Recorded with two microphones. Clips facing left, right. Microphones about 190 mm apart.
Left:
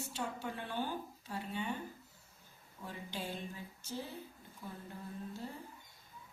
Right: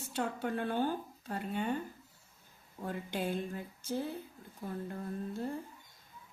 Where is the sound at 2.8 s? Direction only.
55° right (ahead or behind).